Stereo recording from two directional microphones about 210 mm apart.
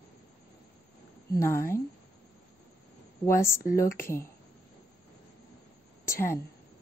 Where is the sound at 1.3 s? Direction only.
15° left (ahead or behind).